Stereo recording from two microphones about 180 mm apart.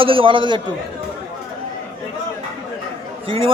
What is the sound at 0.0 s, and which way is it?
Speech, 30° right (ahead or behind).